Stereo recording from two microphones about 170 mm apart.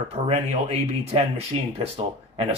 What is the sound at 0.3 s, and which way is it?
Speech, 40° right (ahead or behind).